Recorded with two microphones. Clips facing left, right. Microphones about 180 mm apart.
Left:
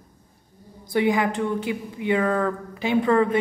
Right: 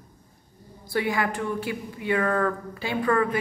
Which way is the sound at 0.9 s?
20° left (ahead or behind).